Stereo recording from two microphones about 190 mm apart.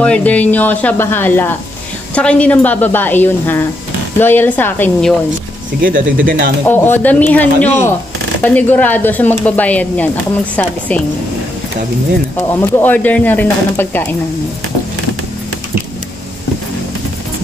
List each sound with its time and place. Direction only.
0.0 s speech: 5° left (ahead or behind)
6.1 s speech: 50° right (ahead or behind)
6.7 s speech: 10° left (ahead or behind)
12.4 s speech: 10° left (ahead or behind)